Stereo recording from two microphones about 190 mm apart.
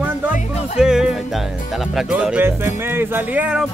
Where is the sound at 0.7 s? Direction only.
5° right (ahead or behind).